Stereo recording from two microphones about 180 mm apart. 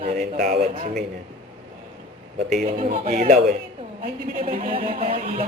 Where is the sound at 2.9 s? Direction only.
45° right (ahead or behind).